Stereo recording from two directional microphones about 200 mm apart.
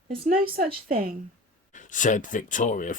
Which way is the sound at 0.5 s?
45° right (ahead or behind).